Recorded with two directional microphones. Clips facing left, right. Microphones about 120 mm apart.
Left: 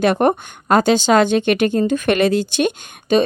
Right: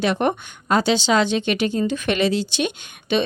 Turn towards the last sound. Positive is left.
turn(degrees=45)  # may be behind; listen again after turning